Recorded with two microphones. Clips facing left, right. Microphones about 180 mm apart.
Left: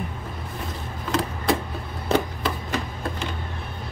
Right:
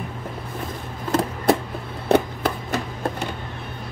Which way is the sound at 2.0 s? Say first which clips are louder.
Right 4 dB; 60° right (ahead or behind).